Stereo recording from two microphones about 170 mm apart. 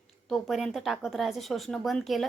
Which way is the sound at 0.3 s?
Centre (ahead or behind).